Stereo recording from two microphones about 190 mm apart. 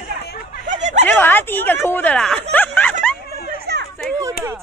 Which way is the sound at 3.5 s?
55° right (ahead or behind).